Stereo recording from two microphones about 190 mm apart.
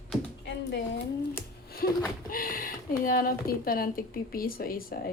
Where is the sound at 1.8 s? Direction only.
50° left (ahead or behind).